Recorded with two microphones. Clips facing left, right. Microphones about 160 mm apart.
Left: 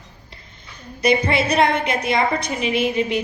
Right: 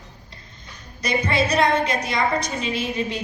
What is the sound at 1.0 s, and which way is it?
A woman's voice, 25° left (ahead or behind).